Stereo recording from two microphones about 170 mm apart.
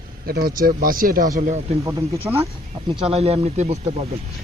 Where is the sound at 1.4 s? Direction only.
45° right (ahead or behind).